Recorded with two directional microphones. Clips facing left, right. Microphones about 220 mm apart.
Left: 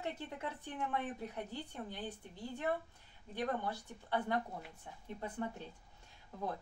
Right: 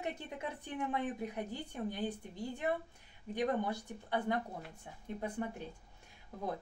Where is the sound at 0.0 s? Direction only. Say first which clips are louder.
Right 1 dB; 15° right (ahead or behind).